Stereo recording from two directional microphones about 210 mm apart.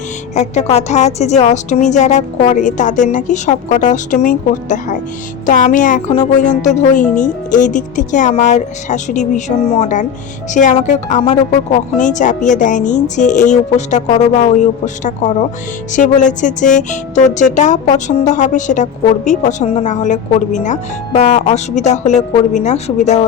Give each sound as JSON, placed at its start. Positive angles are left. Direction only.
{"t": 0.3, "sound": "speech", "side_deg": 30}